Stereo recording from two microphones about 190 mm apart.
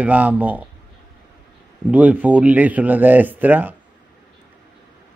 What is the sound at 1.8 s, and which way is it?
Speech, 10° right (ahead or behind).